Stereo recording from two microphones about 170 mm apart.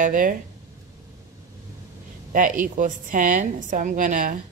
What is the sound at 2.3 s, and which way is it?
Speech, 50° right (ahead or behind).